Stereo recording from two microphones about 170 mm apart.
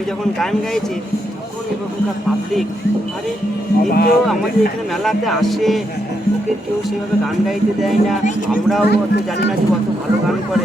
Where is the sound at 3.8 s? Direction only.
60° left (ahead or behind).